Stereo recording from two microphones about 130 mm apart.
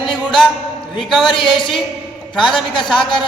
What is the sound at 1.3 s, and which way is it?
Speech, 40° left (ahead or behind).